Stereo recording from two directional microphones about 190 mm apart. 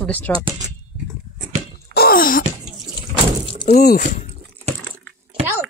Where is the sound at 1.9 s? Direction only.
50° left (ahead or behind).